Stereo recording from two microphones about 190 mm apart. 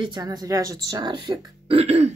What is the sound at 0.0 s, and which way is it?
Speech, 25° right (ahead or behind).